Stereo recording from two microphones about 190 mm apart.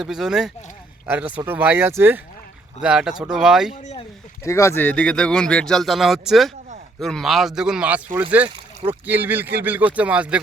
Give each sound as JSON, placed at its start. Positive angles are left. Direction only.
{"t": 0.0, "sound": "speech", "side_deg": -5}
{"t": 3.7, "sound": "speech", "side_deg": 30}
{"t": 4.4, "sound": "speech", "side_deg": 15}